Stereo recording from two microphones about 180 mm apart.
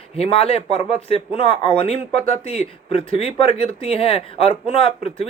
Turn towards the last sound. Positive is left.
turn(degrees=30)  # may be behind; listen again after turning